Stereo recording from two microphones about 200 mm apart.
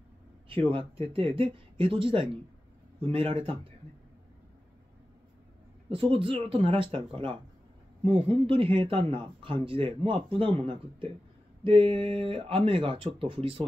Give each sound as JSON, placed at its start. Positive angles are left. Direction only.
{"t": 0.5, "sound": "speech", "side_deg": -25}
{"t": 5.9, "sound": "speech", "side_deg": -25}